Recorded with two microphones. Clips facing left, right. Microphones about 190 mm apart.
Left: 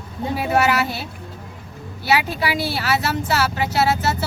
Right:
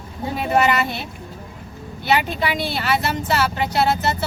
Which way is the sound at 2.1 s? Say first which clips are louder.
Even; 5° left (ahead or behind).